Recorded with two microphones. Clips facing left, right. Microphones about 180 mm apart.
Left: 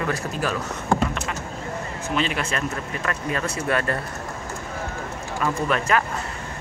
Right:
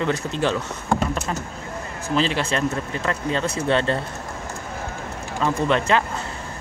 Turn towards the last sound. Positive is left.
turn(degrees=-25)  # may be behind; listen again after turning